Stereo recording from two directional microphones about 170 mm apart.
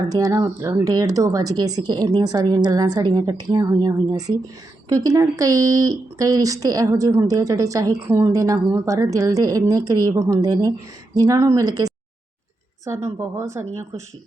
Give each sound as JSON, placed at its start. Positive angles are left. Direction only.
{"t": 0.1, "sound": "a woman's voice", "side_deg": -20}